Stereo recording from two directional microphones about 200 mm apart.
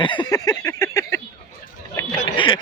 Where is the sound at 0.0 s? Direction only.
25° left (ahead or behind).